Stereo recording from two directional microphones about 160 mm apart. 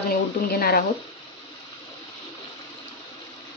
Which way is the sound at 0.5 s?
75° left (ahead or behind).